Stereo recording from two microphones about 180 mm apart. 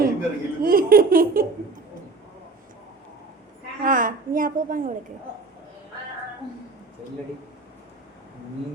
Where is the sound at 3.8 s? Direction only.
50° right (ahead or behind).